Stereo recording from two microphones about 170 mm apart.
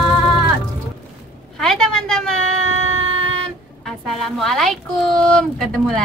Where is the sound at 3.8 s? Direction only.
Centre (ahead or behind).